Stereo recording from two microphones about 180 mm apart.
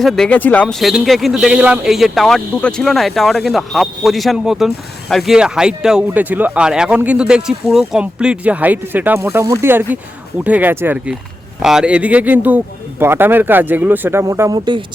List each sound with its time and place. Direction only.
0.0 s a man's voice: centre (ahead or behind); by 14.8 s 25° right (ahead or behind)